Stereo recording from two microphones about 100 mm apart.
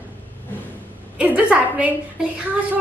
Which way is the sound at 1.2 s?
15° right (ahead or behind).